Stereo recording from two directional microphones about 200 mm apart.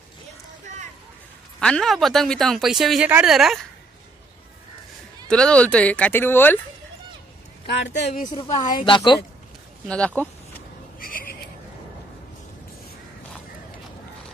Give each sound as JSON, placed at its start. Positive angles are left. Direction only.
{"t": 1.6, "sound": "speech", "side_deg": 5}
{"t": 5.3, "sound": "speech", "side_deg": 5}
{"t": 7.6, "sound": "speech", "side_deg": 60}
{"t": 8.0, "sound": "a woman's voice", "side_deg": 35}
{"t": 9.8, "sound": "speech", "side_deg": 5}
{"t": 11.0, "sound": "a sound", "side_deg": 45}